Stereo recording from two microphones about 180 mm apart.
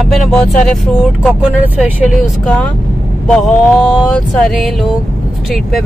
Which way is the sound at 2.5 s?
5° left (ahead or behind).